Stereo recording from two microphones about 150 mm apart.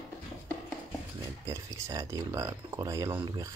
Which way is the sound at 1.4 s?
20° right (ahead or behind).